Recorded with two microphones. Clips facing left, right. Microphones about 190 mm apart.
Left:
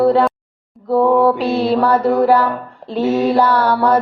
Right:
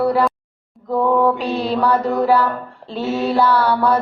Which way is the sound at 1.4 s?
40° left (ahead or behind).